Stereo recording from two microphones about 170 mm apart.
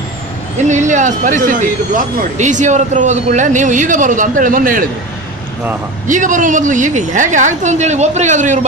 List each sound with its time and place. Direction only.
0.7 s a woman's voice: 45° right (ahead or behind)
6.0 s a woman's voice: 50° right (ahead or behind)